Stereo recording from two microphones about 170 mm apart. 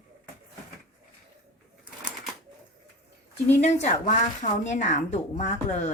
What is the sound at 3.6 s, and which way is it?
Speech, 40° left (ahead or behind).